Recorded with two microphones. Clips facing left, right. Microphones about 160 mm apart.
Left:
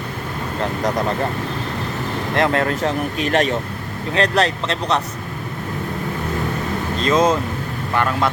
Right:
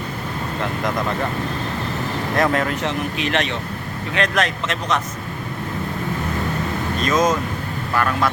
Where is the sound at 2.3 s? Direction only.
35° left (ahead or behind).